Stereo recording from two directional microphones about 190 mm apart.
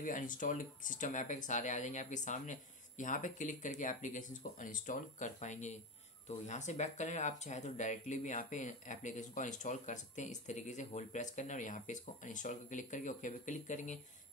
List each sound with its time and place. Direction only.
0.0 s speech: 45° left (ahead or behind)